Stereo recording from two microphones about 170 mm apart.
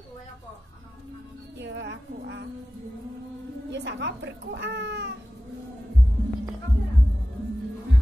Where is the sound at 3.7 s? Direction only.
90° right.